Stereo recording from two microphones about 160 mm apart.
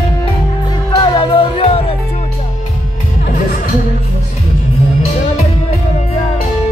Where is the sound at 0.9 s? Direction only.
30° left (ahead or behind).